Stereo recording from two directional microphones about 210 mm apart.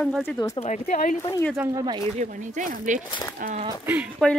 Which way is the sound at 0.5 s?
35° left (ahead or behind).